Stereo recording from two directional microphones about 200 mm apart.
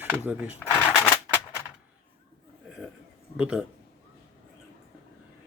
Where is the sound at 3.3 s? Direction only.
5° right (ahead or behind).